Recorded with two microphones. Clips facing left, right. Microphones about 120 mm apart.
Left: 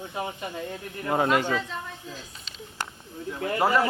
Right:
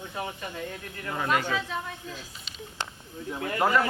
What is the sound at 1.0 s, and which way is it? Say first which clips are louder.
Speech: left 5 dB; 40° left (ahead or behind).